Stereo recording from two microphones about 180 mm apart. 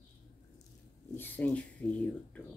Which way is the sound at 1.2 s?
10° left (ahead or behind).